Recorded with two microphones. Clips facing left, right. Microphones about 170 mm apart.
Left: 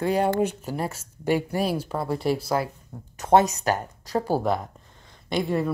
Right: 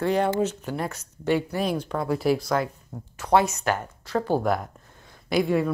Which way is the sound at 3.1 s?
45° left (ahead or behind).